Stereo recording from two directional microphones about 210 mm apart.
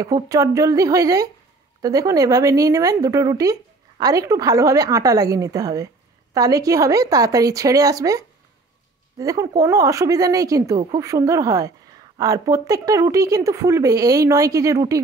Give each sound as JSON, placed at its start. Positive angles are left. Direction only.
{"t": 0.0, "sound": "speech", "side_deg": -15}